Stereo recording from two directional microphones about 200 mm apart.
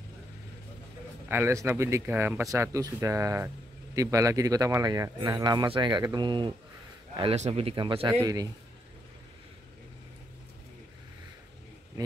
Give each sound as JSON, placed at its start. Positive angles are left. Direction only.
{"t": 1.3, "sound": "speech", "side_deg": -15}
{"t": 8.1, "sound": "speech", "side_deg": -15}